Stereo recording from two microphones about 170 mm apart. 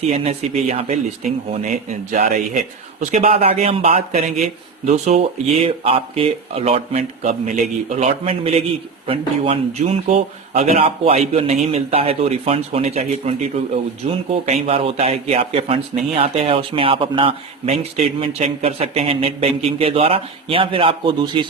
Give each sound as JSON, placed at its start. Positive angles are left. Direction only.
{"t": 0.7, "sound": "a man's voice", "side_deg": -40}
{"t": 7.3, "sound": "a man's voice", "side_deg": -50}